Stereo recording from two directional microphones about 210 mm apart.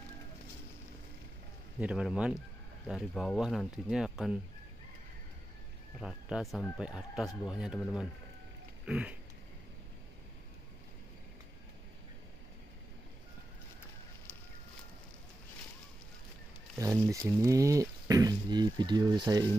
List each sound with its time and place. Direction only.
1.8 s speech: 5° right (ahead or behind)
5.9 s speech: 5° right (ahead or behind)
8.8 s a sound: 5° right (ahead or behind)
16.7 s speech: 15° right (ahead or behind)